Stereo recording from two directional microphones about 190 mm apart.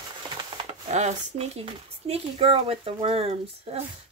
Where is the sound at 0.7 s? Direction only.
35° right (ahead or behind).